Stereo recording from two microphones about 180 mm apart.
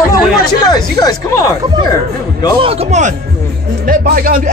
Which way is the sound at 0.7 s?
20° left (ahead or behind).